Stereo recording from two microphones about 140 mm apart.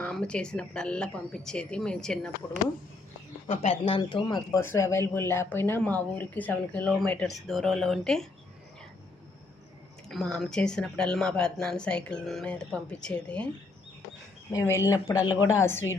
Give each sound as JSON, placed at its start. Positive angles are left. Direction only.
{"t": 0.0, "sound": "speech", "side_deg": 5}
{"t": 3.4, "sound": "speech", "side_deg": 45}
{"t": 10.1, "sound": "speech", "side_deg": 0}
{"t": 14.8, "sound": "a woman's voice", "side_deg": 25}